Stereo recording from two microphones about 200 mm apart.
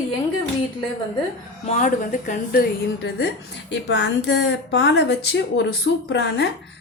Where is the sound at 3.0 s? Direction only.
60° left (ahead or behind).